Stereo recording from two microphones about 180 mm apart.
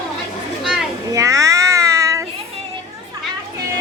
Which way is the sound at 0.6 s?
Centre (ahead or behind).